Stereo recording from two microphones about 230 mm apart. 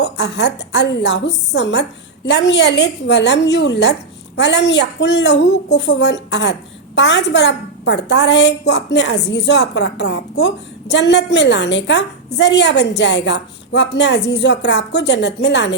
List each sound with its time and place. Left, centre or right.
0.0 s a woman's voice: left